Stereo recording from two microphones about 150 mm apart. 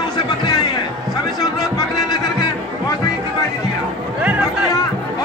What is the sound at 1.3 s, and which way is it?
Music, 25° left (ahead or behind).